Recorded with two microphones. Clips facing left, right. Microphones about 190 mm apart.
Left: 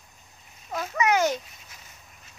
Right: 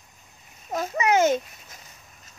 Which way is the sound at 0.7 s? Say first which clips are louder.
Right 4 dB; 40° right (ahead or behind).